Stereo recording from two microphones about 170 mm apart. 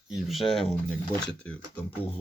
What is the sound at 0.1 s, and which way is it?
Speech, centre (ahead or behind).